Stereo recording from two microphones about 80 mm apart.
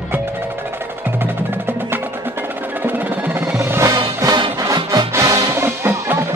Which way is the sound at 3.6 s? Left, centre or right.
Right.